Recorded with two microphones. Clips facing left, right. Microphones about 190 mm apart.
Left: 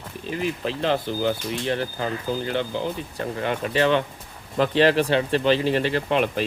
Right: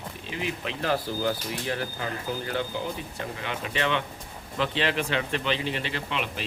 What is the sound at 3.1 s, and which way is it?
Speech, 45° left (ahead or behind).